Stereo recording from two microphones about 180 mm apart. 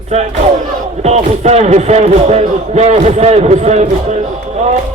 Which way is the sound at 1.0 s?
35° right (ahead or behind).